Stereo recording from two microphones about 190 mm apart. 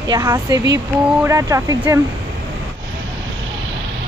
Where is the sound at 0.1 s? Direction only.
20° right (ahead or behind).